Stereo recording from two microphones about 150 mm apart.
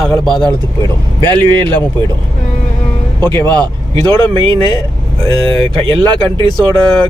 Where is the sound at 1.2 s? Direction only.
30° right (ahead or behind).